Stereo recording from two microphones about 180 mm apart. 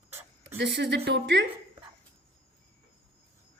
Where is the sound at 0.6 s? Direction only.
75° right (ahead or behind).